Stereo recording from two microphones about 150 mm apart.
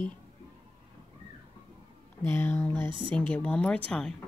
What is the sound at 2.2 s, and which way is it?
Speech, 15° left (ahead or behind).